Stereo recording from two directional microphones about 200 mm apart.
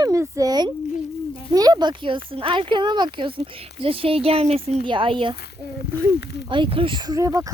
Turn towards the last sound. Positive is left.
turn(degrees=-15)  # may be behind; listen again after turning